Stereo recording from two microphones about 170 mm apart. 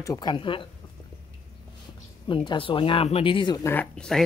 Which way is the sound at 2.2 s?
30° left (ahead or behind).